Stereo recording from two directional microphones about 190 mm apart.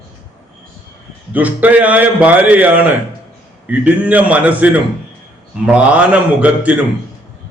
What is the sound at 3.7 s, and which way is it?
A man's voice, 10° right (ahead or behind).